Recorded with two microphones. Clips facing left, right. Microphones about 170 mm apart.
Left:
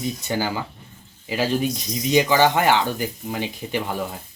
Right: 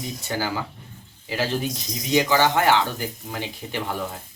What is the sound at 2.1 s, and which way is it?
Speech, 20° left (ahead or behind).